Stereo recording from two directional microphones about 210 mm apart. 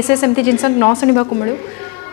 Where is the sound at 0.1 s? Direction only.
15° left (ahead or behind).